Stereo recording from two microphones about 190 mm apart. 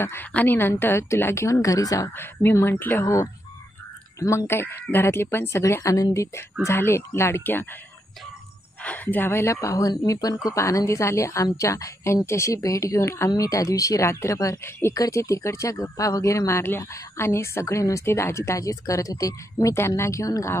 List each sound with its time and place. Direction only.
0.0 s speech: 10° left (ahead or behind)
8.8 s speech: 10° left (ahead or behind)